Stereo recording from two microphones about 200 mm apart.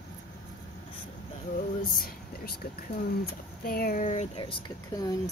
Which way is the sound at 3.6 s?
50° left (ahead or behind).